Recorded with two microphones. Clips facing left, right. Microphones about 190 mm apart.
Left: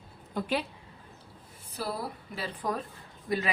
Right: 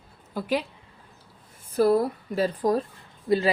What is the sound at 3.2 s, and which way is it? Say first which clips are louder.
Speech: right 9 dB; 30° right (ahead or behind).